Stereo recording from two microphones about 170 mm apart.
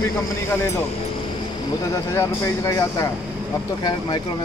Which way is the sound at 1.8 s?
15° left (ahead or behind).